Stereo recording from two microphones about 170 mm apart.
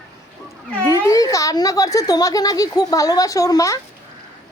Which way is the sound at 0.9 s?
20° left (ahead or behind).